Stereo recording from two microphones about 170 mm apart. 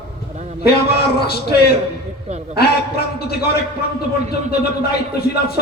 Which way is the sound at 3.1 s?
65° left (ahead or behind).